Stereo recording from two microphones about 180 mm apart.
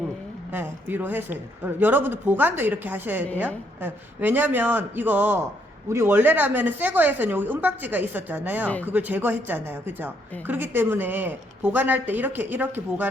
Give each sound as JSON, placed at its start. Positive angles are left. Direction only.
{"t": 0.5, "sound": "a woman's voice", "side_deg": -10}